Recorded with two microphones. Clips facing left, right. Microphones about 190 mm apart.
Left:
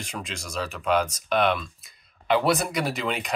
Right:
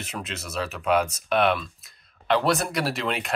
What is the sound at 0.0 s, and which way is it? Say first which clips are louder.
Speech: right 1 dB; 5° right (ahead or behind).